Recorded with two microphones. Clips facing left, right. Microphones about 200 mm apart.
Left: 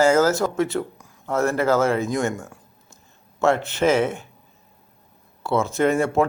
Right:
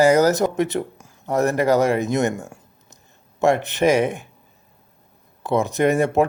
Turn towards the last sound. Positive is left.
turn(degrees=-20)  # may be behind; listen again after turning